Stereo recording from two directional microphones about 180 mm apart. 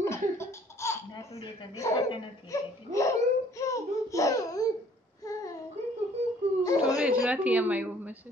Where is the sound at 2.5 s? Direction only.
15° left (ahead or behind).